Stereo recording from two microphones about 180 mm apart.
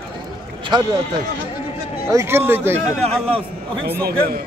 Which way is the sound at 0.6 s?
25° right (ahead or behind).